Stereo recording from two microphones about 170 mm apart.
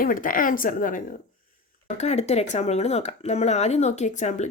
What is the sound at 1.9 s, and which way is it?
Speech, 40° left (ahead or behind).